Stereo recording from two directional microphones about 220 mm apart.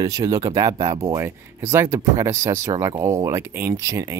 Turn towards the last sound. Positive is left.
turn(degrees=-15)  # may be behind; listen again after turning